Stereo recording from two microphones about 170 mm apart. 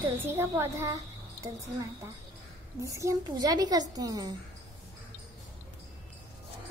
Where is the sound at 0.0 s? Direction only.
15° right (ahead or behind).